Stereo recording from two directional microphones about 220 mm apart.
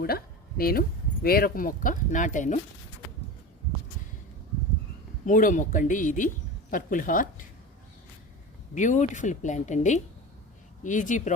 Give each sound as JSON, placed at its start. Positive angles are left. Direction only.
{"t": 0.0, "sound": "speech", "side_deg": 45}
{"t": 5.2, "sound": "speech", "side_deg": 35}
{"t": 8.7, "sound": "speech", "side_deg": 35}